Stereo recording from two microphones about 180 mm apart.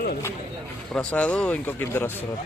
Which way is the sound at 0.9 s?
5° left (ahead or behind).